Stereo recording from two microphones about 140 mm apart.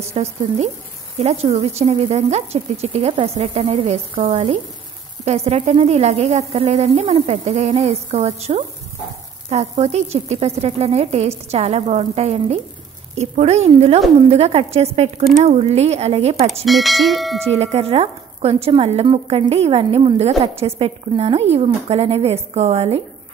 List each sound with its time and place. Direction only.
0.1 s a woman's voice: 50° right (ahead or behind)
16.6 s bell: centre (ahead or behind)
17.5 s a woman's voice: 50° right (ahead or behind)